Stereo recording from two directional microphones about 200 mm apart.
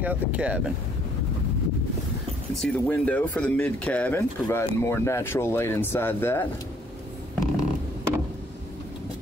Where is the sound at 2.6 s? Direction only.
5° left (ahead or behind).